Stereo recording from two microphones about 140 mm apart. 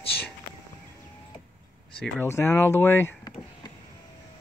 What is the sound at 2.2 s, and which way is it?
Speech, 15° left (ahead or behind).